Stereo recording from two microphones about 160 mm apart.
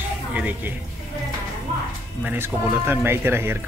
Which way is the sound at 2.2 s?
10° right (ahead or behind).